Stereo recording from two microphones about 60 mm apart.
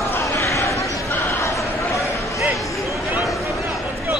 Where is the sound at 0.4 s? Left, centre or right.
Left.